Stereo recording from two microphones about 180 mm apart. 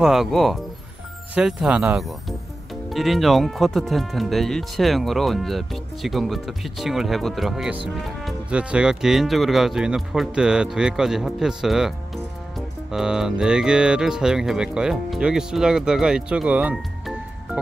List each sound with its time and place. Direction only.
0.0 s speech: centre (ahead or behind)